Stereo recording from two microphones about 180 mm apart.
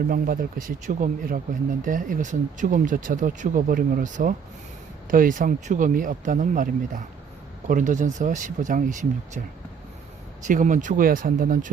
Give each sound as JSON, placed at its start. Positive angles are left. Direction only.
{"t": 0.1, "sound": "speech", "side_deg": -50}
{"t": 10.4, "sound": "speech", "side_deg": -45}